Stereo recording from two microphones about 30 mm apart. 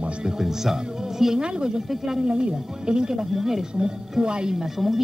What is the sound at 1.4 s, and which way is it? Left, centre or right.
Speech, right.